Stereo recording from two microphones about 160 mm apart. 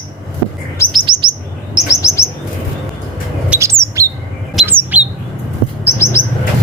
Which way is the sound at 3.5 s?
15° right (ahead or behind).